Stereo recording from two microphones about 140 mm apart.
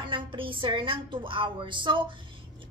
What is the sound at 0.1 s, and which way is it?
A woman's voice, 35° right (ahead or behind).